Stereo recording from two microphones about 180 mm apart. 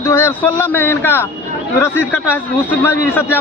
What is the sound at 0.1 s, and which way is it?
A man's voice, 15° left (ahead or behind).